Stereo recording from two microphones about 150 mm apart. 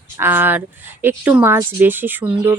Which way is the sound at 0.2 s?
15° right (ahead or behind).